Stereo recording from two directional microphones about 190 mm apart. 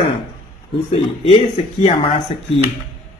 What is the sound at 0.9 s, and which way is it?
Speech, 30° left (ahead or behind).